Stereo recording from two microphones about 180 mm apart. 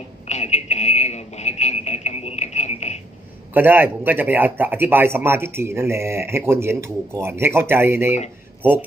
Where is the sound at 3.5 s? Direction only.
10° right (ahead or behind).